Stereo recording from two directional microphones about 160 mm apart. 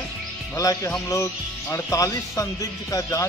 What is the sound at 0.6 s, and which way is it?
Speech, 20° left (ahead or behind).